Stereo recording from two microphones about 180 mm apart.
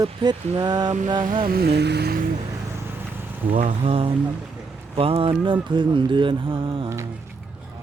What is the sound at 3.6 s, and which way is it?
Speech, 35° right (ahead or behind).